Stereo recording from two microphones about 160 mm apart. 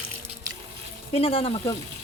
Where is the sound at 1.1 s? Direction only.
35° left (ahead or behind).